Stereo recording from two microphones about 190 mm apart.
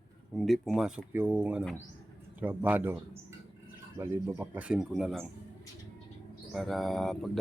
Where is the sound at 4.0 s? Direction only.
10° right (ahead or behind).